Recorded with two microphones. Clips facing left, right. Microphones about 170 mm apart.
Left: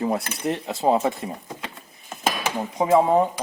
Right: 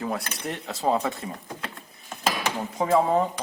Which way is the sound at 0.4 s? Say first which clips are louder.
Left 5 dB; 25° left (ahead or behind).